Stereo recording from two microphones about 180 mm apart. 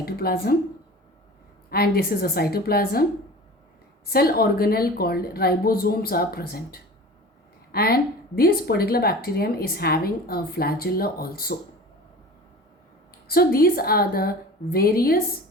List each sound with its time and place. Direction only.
0.0 s speech: 55° left (ahead or behind)
1.7 s speech: 55° left (ahead or behind)
4.1 s speech: 55° left (ahead or behind)
13.2 s speech: 55° left (ahead or behind)